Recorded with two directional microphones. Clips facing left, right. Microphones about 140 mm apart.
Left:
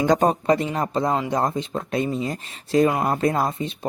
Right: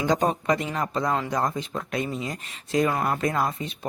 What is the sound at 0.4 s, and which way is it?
Speech, 35° left (ahead or behind).